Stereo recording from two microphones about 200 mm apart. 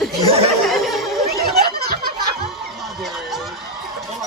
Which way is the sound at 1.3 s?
50° right (ahead or behind).